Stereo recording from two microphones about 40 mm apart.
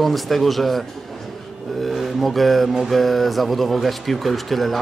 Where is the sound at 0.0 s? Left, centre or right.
Centre.